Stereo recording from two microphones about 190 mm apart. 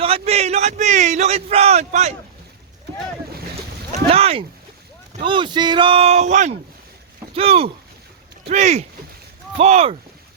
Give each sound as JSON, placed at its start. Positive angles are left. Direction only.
{"t": 0.0, "sound": "a man's voice", "side_deg": -30}
{"t": 4.1, "sound": "speech", "side_deg": -30}